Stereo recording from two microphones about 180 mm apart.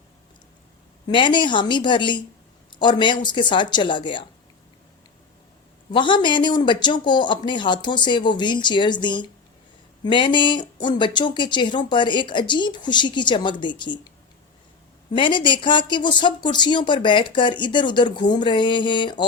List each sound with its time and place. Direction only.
1.0 s speech: 25° left (ahead or behind)
5.9 s speech: 25° left (ahead or behind)
15.1 s speech: 25° left (ahead or behind)